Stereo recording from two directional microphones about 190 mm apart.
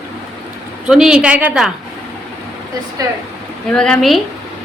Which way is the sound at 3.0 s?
20° right (ahead or behind).